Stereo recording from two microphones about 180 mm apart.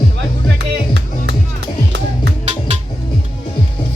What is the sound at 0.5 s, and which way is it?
Music, 70° right (ahead or behind).